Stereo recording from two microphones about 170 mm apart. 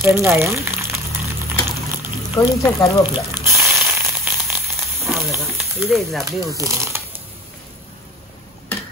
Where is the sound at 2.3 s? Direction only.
20° left (ahead or behind).